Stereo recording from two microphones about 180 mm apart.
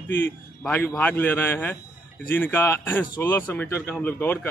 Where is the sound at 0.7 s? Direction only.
10° left (ahead or behind).